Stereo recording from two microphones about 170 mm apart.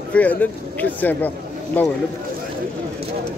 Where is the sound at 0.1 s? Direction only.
10° left (ahead or behind).